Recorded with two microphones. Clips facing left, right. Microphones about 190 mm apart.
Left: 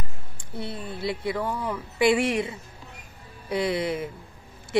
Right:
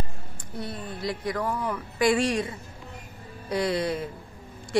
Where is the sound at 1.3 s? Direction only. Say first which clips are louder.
Even; 10° left (ahead or behind).